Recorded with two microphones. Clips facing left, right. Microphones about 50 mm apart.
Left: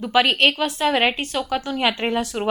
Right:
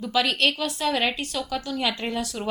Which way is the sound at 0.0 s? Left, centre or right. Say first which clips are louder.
Left 5 dB; left.